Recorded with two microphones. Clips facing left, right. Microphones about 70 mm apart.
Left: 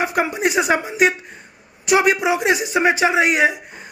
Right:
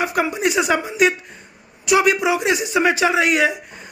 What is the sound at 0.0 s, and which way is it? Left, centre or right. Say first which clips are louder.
Speech: even; left.